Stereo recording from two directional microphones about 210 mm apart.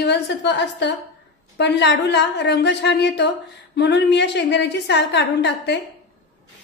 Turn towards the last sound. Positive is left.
turn(degrees=55)  # may be behind; listen again after turning